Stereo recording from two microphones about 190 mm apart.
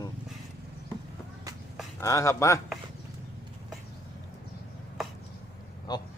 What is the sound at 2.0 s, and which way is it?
Speech, 15° left (ahead or behind).